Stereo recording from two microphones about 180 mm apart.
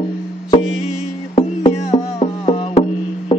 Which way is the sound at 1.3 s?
35° left (ahead or behind).